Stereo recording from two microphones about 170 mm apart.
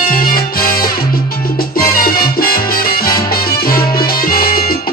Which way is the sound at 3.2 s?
60° left (ahead or behind).